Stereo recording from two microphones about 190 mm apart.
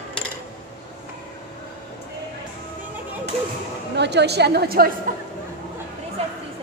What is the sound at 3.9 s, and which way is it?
A woman's voice, 60° right (ahead or behind).